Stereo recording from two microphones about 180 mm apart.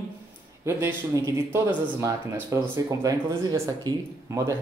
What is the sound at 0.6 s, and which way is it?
Speech, 15° right (ahead or behind).